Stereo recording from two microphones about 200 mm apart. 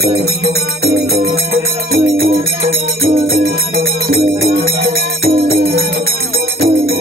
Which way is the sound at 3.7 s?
50° right (ahead or behind).